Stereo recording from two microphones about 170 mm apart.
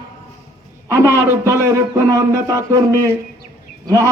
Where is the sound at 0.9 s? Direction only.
15° right (ahead or behind).